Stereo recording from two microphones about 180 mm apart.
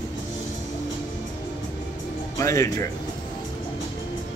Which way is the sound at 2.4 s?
15° left (ahead or behind).